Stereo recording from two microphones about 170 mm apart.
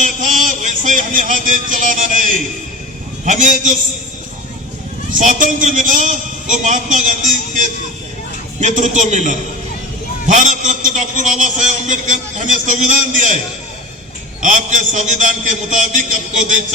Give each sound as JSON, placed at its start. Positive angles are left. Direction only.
{"t": 0.0, "sound": "a sound", "side_deg": -45}
{"t": 3.2, "sound": "a man's voice", "side_deg": -45}
{"t": 5.1, "sound": "a man's voice", "side_deg": -50}
{"t": 14.4, "sound": "a man's voice", "side_deg": -45}